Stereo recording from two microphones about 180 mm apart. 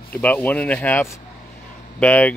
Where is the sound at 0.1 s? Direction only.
10° left (ahead or behind).